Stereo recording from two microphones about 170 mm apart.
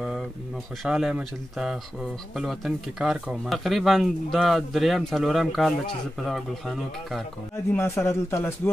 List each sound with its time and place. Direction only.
0.8 s speech: 5° right (ahead or behind)
7.7 s speech: 15° left (ahead or behind)